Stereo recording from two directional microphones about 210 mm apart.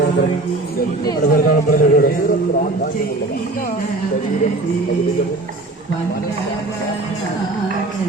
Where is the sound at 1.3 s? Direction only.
45° left (ahead or behind).